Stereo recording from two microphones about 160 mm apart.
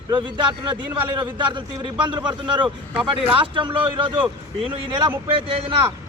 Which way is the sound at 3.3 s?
30° right (ahead or behind).